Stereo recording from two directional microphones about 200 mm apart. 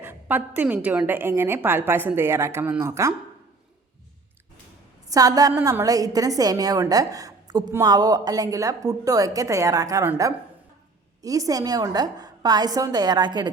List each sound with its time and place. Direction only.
0.0 s a woman's voice: 10° right (ahead or behind)
5.0 s a woman's voice: 15° right (ahead or behind)